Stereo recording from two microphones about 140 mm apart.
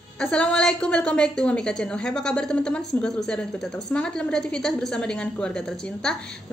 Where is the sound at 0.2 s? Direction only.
5° left (ahead or behind).